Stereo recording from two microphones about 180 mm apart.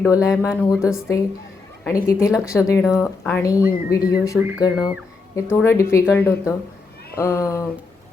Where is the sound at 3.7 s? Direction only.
55° left (ahead or behind).